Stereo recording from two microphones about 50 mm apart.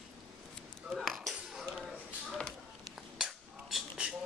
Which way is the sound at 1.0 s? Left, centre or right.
Centre.